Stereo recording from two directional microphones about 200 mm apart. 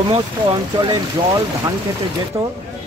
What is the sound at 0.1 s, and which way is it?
Speech, 25° right (ahead or behind).